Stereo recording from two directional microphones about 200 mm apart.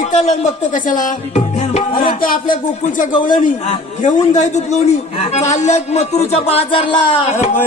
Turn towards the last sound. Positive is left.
turn(degrees=30)  # may be behind; listen again after turning